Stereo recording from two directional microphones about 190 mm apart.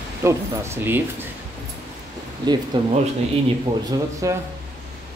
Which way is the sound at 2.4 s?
20° right (ahead or behind).